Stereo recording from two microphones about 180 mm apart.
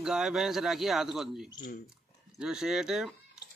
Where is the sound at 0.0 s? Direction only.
Centre (ahead or behind).